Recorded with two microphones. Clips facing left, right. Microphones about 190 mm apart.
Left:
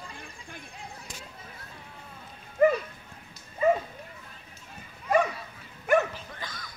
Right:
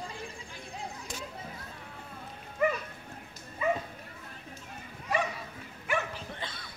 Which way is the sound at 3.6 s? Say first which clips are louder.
Left 7 dB; 40° left (ahead or behind).